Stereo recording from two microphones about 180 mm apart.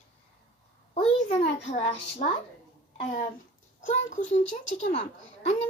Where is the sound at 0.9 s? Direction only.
40° left (ahead or behind).